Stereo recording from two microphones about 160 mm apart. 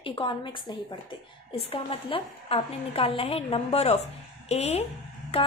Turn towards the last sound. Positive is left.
turn(degrees=40)  # may be behind; listen again after turning